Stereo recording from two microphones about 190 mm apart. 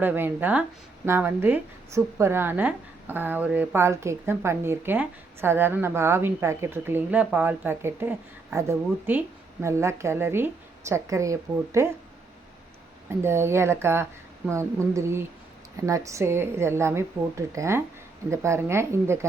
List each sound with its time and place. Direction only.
0.0 s a woman's voice: 10° right (ahead or behind)
13.1 s a woman's voice: 15° right (ahead or behind)